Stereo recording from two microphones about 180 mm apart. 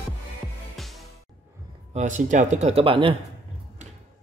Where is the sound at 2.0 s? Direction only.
45° right (ahead or behind).